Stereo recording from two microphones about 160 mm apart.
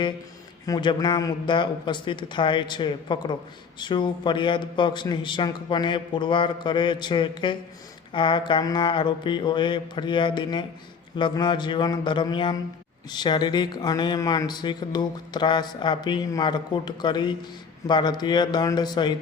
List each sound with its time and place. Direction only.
0.6 s speech: 25° left (ahead or behind)